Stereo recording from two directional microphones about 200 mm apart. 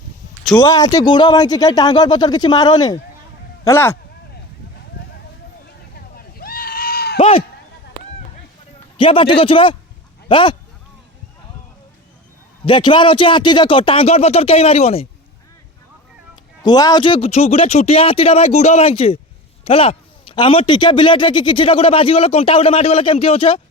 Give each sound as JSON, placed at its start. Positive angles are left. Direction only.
{"t": 0.6, "sound": "a man's voice", "side_deg": 20}
{"t": 6.1, "sound": "sheep", "side_deg": 50}
{"t": 7.2, "sound": "a sound", "side_deg": 30}
{"t": 9.0, "sound": "a man's voice", "side_deg": 25}
{"t": 12.6, "sound": "a man's voice", "side_deg": 25}
{"t": 16.3, "sound": "a man's voice", "side_deg": 20}